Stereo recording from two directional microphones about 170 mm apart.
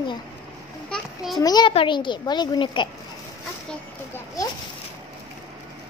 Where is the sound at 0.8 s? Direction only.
Centre (ahead or behind).